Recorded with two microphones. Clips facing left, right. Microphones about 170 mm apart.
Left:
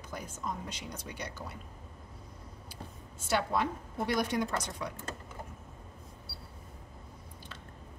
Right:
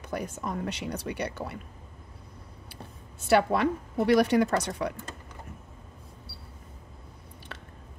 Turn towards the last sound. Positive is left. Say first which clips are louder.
# right 5 dB
turn(degrees=-70)  # may be behind; listen again after turning